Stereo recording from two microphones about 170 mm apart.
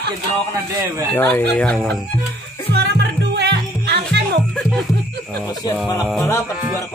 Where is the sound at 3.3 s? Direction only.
80° right.